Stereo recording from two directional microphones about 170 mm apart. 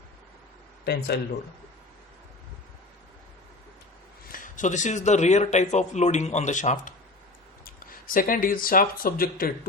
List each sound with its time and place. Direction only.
0.9 s speech: 75° left (ahead or behind)
4.3 s speech: 50° left (ahead or behind)
7.6 s speech: 55° left (ahead or behind)